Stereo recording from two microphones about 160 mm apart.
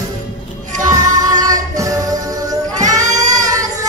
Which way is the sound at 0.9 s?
20° right (ahead or behind).